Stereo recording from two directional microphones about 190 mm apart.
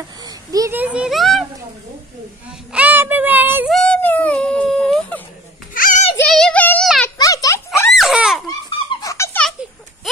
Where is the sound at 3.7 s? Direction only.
5° left (ahead or behind).